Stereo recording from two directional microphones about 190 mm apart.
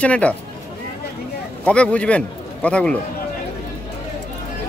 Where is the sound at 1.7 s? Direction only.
5° left (ahead or behind).